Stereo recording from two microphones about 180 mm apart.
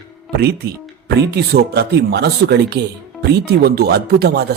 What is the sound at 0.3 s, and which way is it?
Speech, 60° right (ahead or behind).